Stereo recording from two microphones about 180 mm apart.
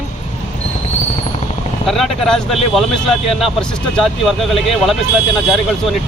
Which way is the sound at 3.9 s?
Centre (ahead or behind).